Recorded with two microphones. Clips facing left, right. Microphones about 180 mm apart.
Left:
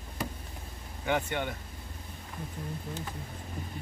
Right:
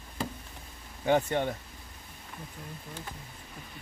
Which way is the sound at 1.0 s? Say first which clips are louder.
Right 4 dB; 35° right (ahead or behind).